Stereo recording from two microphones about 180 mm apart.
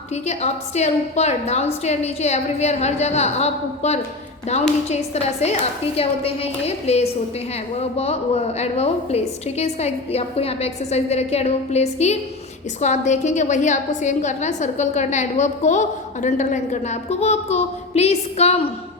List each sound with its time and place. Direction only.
0.1 s a woman's voice: 35° left (ahead or behind)